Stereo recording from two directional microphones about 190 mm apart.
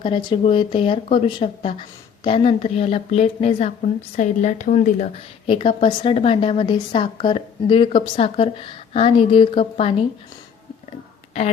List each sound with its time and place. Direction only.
0.0 s a woman's voice: 25° left (ahead or behind)